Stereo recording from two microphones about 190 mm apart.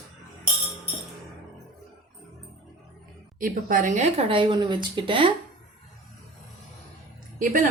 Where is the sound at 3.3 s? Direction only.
45° right (ahead or behind); by 5.3 s 25° right (ahead or behind).